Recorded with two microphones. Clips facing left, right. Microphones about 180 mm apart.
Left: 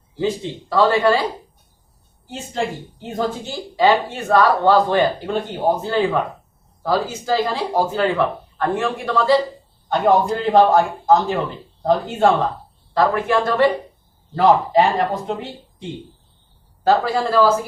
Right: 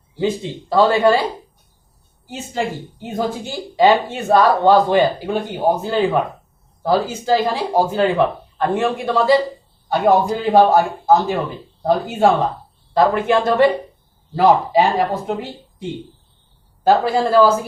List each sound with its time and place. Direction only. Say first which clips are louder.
0.7 s a man's voice: right 2 dB; 20° right (ahead or behind)
2.3 s a man's voice: right 1 dB; 5° right (ahead or behind)
13.0 s a man's voice: right 2 dB; 20° right (ahead or behind)
14.3 s speech: right 1 dB; 5° right (ahead or behind)
16.8 s a man's voice: right 2 dB; 15° right (ahead or behind)